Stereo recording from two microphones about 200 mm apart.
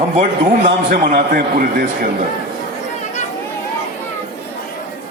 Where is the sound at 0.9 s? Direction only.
50° right (ahead or behind).